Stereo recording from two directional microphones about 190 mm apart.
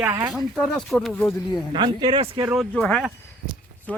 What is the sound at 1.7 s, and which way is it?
Speech, 25° right (ahead or behind).